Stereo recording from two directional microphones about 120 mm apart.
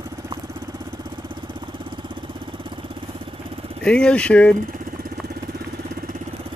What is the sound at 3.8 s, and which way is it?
Speech, 10° left (ahead or behind).